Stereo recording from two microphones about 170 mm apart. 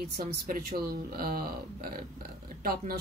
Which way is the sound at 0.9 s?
60° right (ahead or behind).